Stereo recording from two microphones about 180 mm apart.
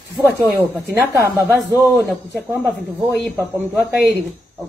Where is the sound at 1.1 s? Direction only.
15° right (ahead or behind).